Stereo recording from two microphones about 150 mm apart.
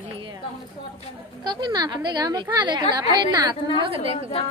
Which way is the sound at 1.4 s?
30° right (ahead or behind).